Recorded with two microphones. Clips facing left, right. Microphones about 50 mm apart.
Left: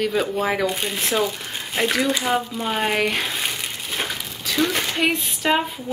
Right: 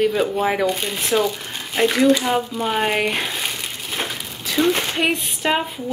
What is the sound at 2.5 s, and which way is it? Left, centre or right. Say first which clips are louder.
Crumpling: right 2 dB; centre.